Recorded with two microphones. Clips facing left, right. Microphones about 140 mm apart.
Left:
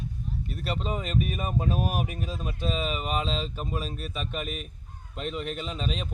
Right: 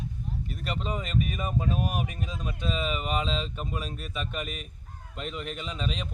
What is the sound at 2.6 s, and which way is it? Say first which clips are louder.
Speech: even; 40° left (ahead or behind).